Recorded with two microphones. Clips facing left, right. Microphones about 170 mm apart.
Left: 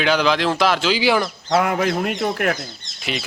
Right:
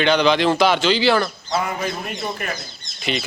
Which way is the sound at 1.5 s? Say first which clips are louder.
Left 5 dB; 75° left (ahead or behind).